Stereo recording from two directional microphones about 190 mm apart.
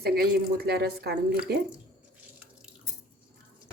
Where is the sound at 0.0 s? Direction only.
55° right (ahead or behind).